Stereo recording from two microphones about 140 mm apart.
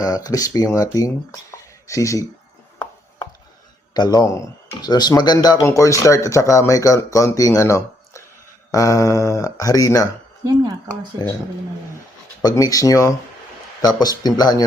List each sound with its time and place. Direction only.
0.0 s speech: 25° left (ahead or behind)
3.9 s speech: 30° left (ahead or behind)
11.1 s speech: 25° right (ahead or behind)
12.4 s speech: 25° left (ahead or behind)